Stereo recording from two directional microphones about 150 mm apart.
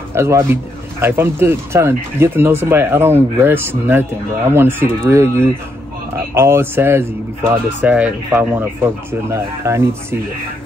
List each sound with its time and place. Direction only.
0.1 s speech: 15° right (ahead or behind)